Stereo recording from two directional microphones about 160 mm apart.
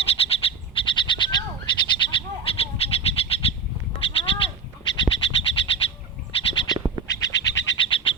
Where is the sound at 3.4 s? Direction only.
35° left (ahead or behind).